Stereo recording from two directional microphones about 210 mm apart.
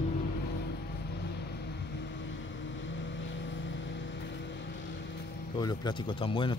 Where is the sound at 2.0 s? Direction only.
60° left (ahead or behind).